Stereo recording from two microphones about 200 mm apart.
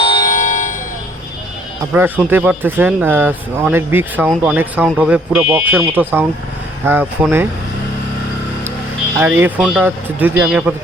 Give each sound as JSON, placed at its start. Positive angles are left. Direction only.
{"t": 0.0, "sound": "music", "side_deg": 25}
{"t": 0.3, "sound": "music", "side_deg": 40}
{"t": 1.9, "sound": "speech", "side_deg": -10}
{"t": 9.4, "sound": "speech", "side_deg": -5}